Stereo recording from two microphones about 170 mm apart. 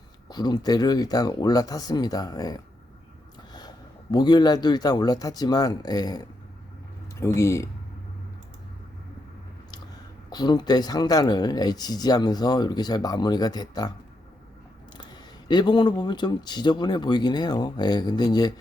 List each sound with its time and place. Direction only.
0.3 s a man's voice: 25° left (ahead or behind)
10.2 s speech: 25° left (ahead or behind)
14.9 s speech: 25° left (ahead or behind)